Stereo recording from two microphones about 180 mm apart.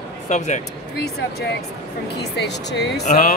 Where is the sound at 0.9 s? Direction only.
60° left (ahead or behind).